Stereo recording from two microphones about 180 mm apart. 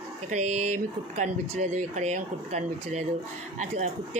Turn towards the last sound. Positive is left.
turn(degrees=-40)  # may be behind; listen again after turning